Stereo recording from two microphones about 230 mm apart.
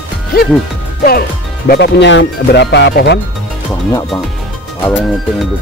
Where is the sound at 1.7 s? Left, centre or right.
Left.